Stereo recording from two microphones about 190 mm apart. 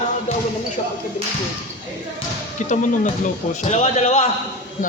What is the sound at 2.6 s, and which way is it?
Speech, 40° left (ahead or behind).